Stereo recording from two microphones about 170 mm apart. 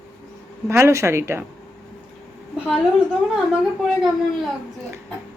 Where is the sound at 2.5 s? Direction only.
5° right (ahead or behind).